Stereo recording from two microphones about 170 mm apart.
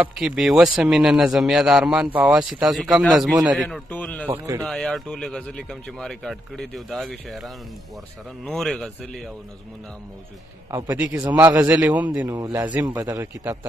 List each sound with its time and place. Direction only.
0.0 s a man's voice: centre (ahead or behind)
10.9 s a man's voice: 10° right (ahead or behind)
12.2 s a man's voice: 20° right (ahead or behind)